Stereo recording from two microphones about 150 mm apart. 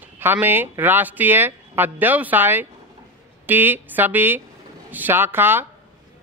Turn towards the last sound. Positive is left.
turn(degrees=-15)  # may be behind; listen again after turning